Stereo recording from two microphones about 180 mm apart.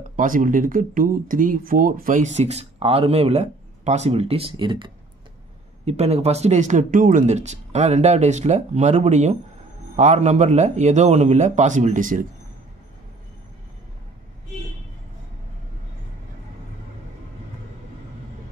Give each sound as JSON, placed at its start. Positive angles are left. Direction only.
{"t": 0.1, "sound": "speech", "side_deg": -50}